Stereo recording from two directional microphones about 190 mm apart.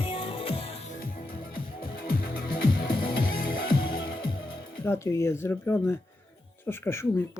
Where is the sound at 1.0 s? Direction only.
50° left (ahead or behind).